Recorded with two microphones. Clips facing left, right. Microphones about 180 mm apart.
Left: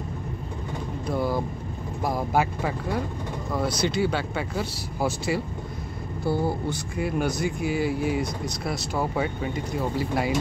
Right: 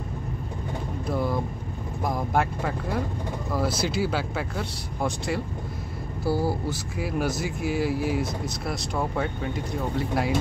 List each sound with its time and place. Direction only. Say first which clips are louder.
1.0 s speech: left 1 dB; centre (ahead or behind)